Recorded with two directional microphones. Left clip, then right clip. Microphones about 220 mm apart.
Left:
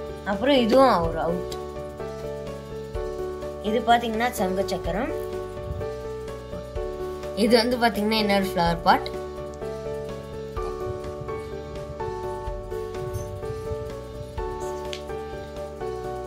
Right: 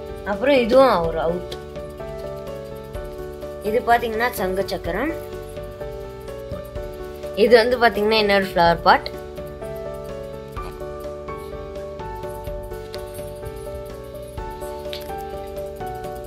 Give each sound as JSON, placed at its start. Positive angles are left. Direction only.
{"t": 0.3, "sound": "speech", "side_deg": -15}
{"t": 3.8, "sound": "a woman's voice", "side_deg": -20}
{"t": 7.3, "sound": "speech", "side_deg": -20}